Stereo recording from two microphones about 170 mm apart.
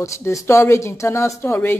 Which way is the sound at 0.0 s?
15° left (ahead or behind).